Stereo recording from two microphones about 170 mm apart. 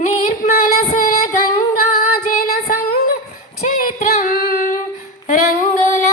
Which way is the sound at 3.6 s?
50° left (ahead or behind).